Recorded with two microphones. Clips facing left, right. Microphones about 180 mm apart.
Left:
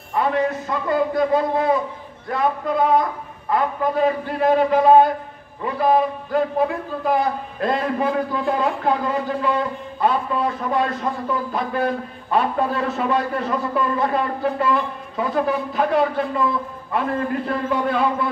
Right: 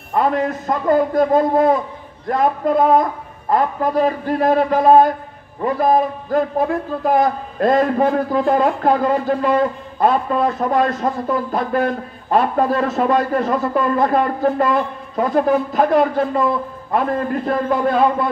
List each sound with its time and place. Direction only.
0.1 s a man's voice: 45° right (ahead or behind)